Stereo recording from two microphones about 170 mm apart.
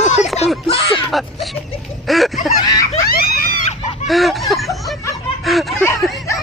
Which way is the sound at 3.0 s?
65° left (ahead or behind).